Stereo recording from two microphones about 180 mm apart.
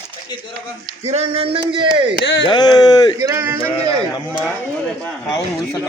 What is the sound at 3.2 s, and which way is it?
Speech, 15° right (ahead or behind).